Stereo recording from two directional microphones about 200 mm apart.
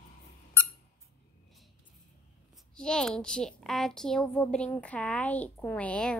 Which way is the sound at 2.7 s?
5° left (ahead or behind).